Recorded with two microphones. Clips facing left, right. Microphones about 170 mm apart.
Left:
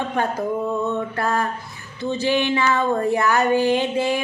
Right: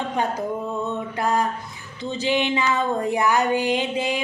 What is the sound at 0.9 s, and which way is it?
Mantra, 15° right (ahead or behind).